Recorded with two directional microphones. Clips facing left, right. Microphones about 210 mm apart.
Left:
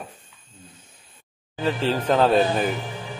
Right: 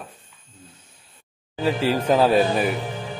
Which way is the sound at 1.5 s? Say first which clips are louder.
Right 2 dB; 10° right (ahead or behind).